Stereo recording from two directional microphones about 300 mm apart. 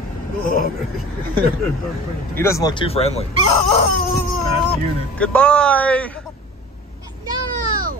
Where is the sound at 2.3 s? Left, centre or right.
Centre.